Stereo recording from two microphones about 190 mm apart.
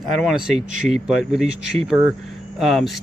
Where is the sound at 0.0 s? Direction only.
Centre (ahead or behind).